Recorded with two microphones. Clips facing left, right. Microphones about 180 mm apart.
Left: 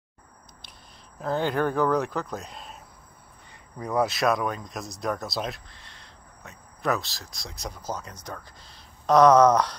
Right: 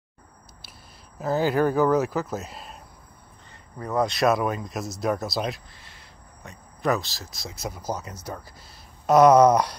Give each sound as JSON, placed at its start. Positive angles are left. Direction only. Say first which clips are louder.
{"t": 1.2, "sound": "speech", "louder": "right 3 dB", "side_deg": -5}
{"t": 3.8, "sound": "speech", "louder": "right 2 dB", "side_deg": 10}